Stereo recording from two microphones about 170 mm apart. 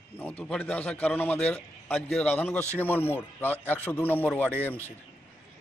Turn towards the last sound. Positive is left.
turn(degrees=10)  # may be behind; listen again after turning